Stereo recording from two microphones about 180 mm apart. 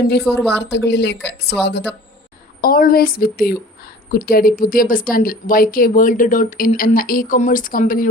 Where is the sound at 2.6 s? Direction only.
55° left (ahead or behind).